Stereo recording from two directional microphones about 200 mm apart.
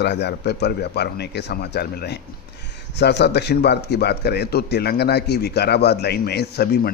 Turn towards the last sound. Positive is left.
turn(degrees=55)  # may be behind; listen again after turning